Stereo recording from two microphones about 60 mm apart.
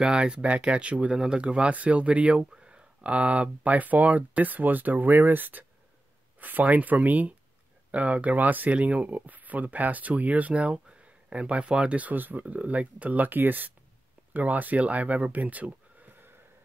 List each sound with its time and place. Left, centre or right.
0.0 s speech: centre